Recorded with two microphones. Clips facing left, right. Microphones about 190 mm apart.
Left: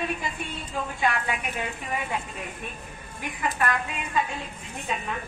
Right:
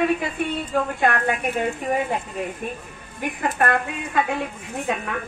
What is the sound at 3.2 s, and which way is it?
A woman's voice, 55° right (ahead or behind).